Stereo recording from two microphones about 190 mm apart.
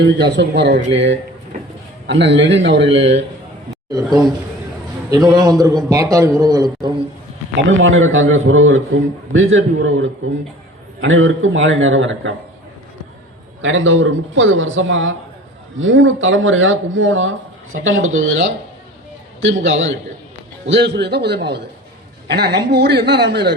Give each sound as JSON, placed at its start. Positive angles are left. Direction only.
{"t": 0.0, "sound": "a man's voice", "side_deg": -65}
{"t": 3.9, "sound": "a man's voice", "side_deg": -20}
{"t": 7.7, "sound": "speech", "side_deg": -90}
{"t": 13.6, "sound": "a man's voice", "side_deg": -90}
{"t": 20.7, "sound": "a man's voice", "side_deg": -65}